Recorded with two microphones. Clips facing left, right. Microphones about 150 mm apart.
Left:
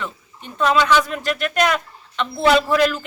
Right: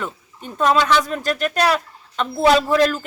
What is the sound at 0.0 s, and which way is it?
Speech, 40° right (ahead or behind).